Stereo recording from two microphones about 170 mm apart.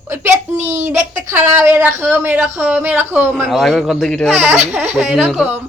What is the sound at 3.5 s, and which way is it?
Speech, centre (ahead or behind).